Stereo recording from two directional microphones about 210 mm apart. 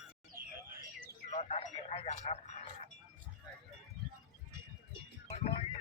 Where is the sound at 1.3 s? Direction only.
30° left (ahead or behind).